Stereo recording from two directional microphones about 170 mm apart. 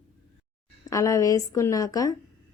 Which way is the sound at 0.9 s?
20° left (ahead or behind).